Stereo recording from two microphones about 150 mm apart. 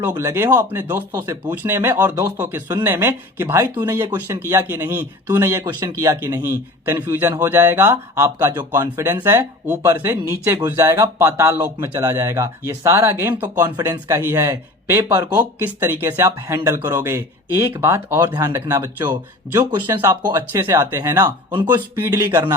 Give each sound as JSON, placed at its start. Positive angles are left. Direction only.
{"t": 0.2, "sound": "speech", "side_deg": -20}